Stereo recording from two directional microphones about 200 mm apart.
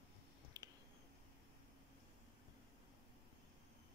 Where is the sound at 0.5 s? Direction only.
20° right (ahead or behind).